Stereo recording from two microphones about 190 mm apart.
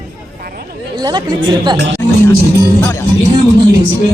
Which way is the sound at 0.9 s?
20° right (ahead or behind).